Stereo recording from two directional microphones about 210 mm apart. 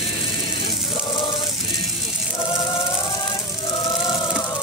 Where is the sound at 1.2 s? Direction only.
20° left (ahead or behind).